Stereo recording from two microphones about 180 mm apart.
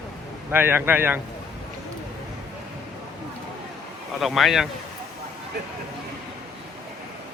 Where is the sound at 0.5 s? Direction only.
10° right (ahead or behind).